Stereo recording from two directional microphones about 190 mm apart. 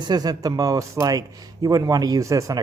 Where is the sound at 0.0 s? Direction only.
20° right (ahead or behind).